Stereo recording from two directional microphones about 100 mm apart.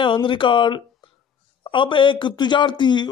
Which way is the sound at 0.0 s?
55° left (ahead or behind).